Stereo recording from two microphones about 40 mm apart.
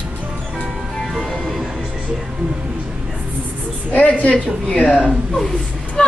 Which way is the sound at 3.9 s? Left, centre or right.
Left.